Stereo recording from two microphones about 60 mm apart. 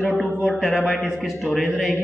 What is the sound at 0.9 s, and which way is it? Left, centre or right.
A woman's voice, centre.